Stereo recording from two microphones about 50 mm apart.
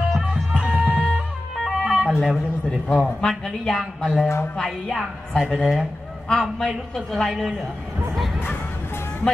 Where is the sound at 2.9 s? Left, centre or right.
Centre.